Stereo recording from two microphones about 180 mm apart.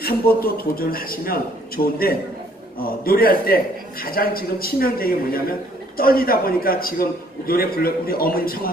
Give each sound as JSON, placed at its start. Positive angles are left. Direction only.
{"t": 0.0, "sound": "a man's voice", "side_deg": 55}